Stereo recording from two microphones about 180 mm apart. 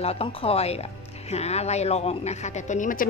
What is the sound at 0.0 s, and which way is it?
Speech, 35° left (ahead or behind).